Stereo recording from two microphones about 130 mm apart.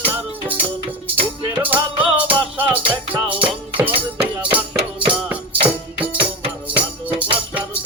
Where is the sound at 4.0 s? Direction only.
10° right (ahead or behind).